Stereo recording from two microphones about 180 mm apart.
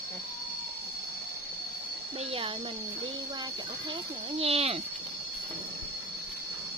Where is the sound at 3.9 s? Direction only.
30° right (ahead or behind).